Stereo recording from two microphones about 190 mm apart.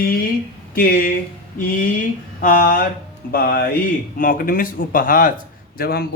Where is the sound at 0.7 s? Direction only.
50° left (ahead or behind).